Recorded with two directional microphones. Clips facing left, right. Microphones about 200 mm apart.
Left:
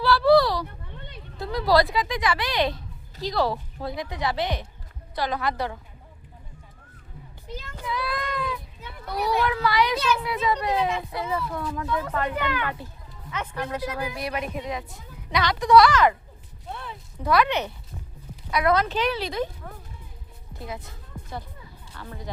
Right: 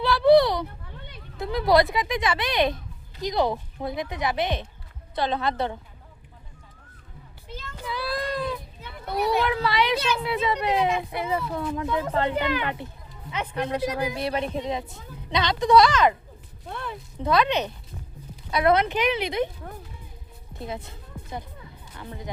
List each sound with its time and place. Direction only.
0.0 s a sound: 20° right (ahead or behind)
1.4 s a child's voice: 20° right (ahead or behind)
7.9 s child singing: 30° right (ahead or behind)
9.0 s a child's voice: 25° right (ahead or behind)
16.7 s a sound: 55° right (ahead or behind)
17.2 s a child's voice: 20° right (ahead or behind)
20.6 s a child's voice: 25° right (ahead or behind)